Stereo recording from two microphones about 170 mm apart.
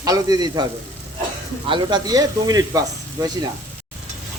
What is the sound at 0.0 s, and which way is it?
Speech, 20° right (ahead or behind).